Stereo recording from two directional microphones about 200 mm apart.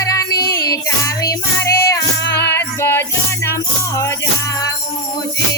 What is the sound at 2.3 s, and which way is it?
Music, 55° left (ahead or behind).